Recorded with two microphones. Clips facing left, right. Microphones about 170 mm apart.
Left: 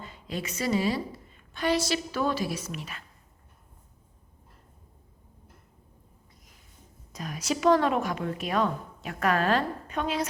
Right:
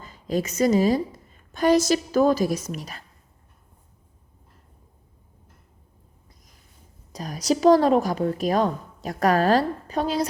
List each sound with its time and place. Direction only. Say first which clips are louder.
0.0 s a woman's voice: right 9 dB; 40° right (ahead or behind)
7.1 s a woman's voice: right 7 dB; 35° right (ahead or behind)